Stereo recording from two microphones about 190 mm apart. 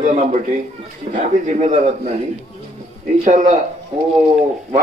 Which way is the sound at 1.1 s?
35° right (ahead or behind).